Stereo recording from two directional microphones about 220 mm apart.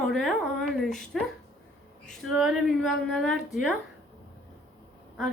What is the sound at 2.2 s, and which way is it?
A woman's voice, centre (ahead or behind).